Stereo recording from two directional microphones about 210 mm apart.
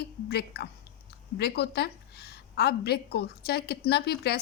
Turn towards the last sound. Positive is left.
turn(degrees=50)  # may be behind; listen again after turning